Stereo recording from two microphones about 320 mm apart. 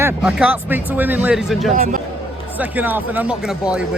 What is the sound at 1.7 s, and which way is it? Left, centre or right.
Speech, right.